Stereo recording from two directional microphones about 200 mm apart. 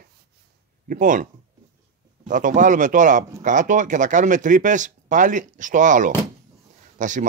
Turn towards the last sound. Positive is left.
turn(degrees=-40)  # may be behind; listen again after turning